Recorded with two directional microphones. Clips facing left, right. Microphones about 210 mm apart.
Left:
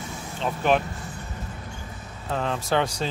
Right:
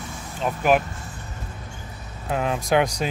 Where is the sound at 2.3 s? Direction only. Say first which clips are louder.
Right 3 dB; 10° right (ahead or behind).